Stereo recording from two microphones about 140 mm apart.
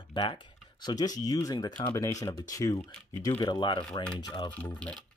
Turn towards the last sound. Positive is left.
turn(degrees=10)  # may be behind; listen again after turning